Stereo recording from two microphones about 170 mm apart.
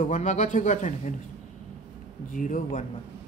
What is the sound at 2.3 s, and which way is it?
Speech, 50° left (ahead or behind).